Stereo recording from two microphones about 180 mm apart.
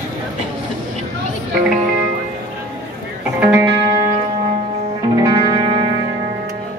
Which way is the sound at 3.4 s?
15° right (ahead or behind).